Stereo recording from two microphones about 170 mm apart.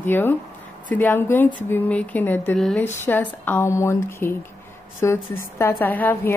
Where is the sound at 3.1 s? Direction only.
10° left (ahead or behind).